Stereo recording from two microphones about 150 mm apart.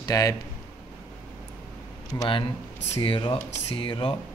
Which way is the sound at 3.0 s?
35° left (ahead or behind).